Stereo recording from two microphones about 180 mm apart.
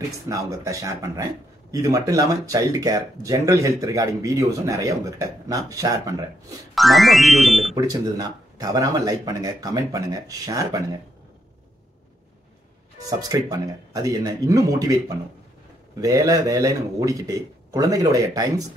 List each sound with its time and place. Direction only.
0.3 s speech: 15° right (ahead or behind)
6.7 s speech: centre (ahead or behind)
7.7 s speech: 20° right (ahead or behind)
13.2 s speech: 20° right (ahead or behind)